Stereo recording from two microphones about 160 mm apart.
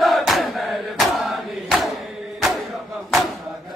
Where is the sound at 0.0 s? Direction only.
Centre (ahead or behind).